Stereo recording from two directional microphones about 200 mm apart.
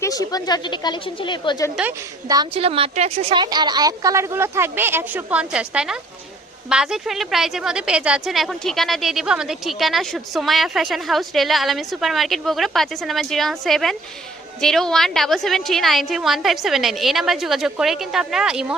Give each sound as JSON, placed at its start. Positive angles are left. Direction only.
{"t": 0.0, "sound": "a woman's voice", "side_deg": 20}
{"t": 2.2, "sound": "a woman's voice", "side_deg": -20}